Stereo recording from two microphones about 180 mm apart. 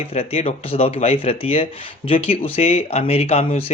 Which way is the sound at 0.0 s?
35° left (ahead or behind).